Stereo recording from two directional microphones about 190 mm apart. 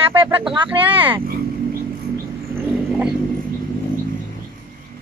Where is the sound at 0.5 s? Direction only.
25° right (ahead or behind).